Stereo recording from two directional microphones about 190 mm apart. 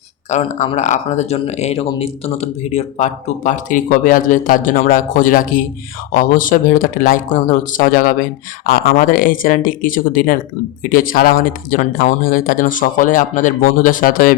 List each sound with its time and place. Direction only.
0.3 s speech: 35° left (ahead or behind)